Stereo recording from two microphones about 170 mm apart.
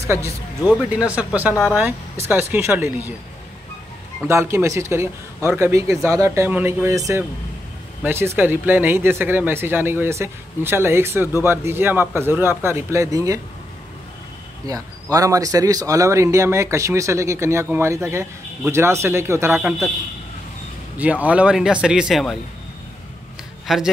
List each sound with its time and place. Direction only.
0.0 s speech: 15° right (ahead or behind)
4.3 s speech: 15° right (ahead or behind)
14.7 s speech: 20° right (ahead or behind)
21.0 s a man's voice: 10° right (ahead or behind)
23.7 s a man's voice: centre (ahead or behind)